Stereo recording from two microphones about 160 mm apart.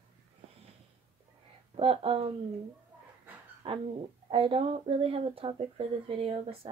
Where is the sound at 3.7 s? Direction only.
35° right (ahead or behind).